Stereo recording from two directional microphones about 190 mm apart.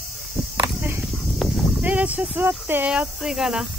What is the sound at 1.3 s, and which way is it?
Speech, centre (ahead or behind).